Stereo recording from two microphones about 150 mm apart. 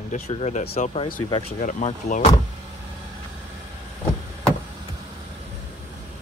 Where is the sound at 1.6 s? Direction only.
60° left (ahead or behind).